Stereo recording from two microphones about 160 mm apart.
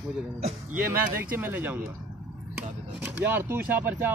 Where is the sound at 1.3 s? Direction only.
10° right (ahead or behind).